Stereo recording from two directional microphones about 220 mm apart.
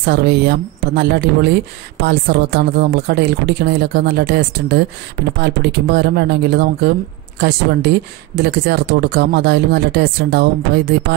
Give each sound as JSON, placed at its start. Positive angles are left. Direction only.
{"t": 0.0, "sound": "speech", "side_deg": -50}